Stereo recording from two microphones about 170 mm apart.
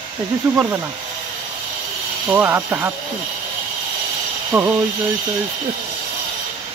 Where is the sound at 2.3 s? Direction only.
10° right (ahead or behind).